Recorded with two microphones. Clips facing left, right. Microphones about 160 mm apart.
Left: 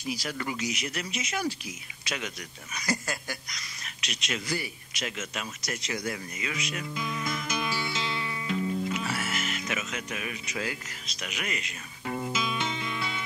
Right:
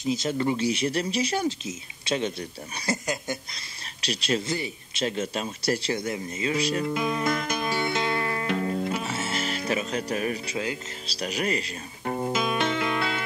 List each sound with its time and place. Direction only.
0.0 s speech: 25° right (ahead or behind)
6.9 s music: 65° right (ahead or behind)
8.9 s music: 25° right (ahead or behind); by 13.2 s 65° right (ahead or behind)